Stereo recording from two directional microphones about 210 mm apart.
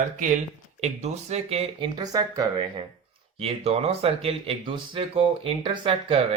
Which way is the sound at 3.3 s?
30° right (ahead or behind).